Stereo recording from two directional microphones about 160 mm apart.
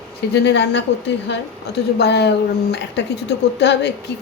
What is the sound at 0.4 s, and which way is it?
Speech, 90° left.